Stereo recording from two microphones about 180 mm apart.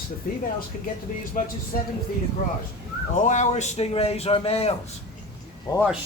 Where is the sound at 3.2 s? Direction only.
40° left (ahead or behind).